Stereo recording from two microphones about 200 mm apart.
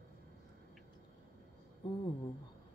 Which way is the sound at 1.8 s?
20° left (ahead or behind).